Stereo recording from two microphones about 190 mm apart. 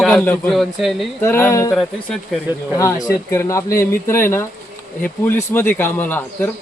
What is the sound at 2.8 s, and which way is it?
Speech, 15° left (ahead or behind).